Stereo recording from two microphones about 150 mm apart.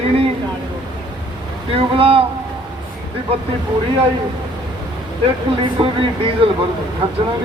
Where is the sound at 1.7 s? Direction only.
40° right (ahead or behind).